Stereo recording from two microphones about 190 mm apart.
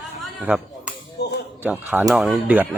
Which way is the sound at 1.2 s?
60° left (ahead or behind).